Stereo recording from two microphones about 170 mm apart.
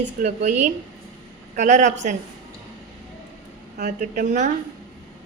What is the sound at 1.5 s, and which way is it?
Speech, 45° right (ahead or behind).